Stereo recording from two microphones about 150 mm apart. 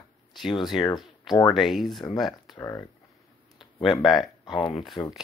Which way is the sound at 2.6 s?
20° left (ahead or behind).